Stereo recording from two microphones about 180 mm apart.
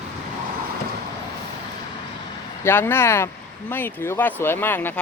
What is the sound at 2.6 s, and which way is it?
Speech, 10° left (ahead or behind).